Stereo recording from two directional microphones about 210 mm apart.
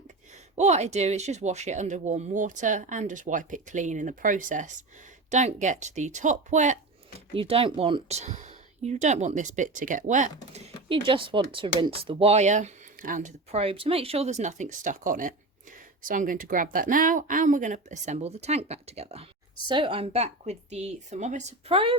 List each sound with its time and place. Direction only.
0.5 s speech: 30° right (ahead or behind)